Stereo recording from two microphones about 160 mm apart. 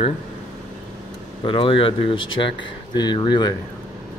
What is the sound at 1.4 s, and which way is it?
Speech, 35° left (ahead or behind).